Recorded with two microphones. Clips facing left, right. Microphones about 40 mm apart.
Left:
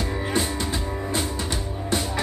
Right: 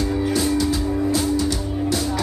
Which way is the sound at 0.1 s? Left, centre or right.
Left.